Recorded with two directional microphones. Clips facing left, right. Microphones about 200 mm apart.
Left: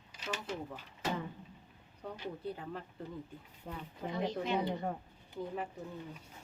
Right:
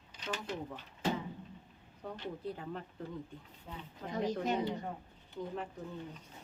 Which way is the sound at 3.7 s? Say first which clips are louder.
Left 3 dB; 60° left (ahead or behind).